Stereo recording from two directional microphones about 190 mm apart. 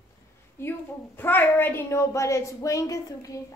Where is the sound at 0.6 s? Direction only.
10° left (ahead or behind).